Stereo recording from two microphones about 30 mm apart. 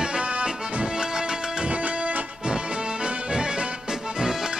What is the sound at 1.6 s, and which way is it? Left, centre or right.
Music, right.